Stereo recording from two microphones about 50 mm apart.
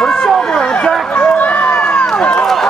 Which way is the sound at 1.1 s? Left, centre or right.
Left.